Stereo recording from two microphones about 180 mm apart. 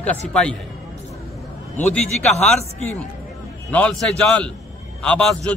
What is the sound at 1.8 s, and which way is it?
A man's voice, 5° left (ahead or behind).